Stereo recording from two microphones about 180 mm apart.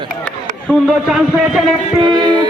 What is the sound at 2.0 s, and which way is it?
Speech, 25° right (ahead or behind).